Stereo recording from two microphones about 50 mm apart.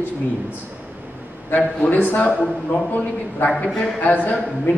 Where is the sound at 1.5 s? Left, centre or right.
Left.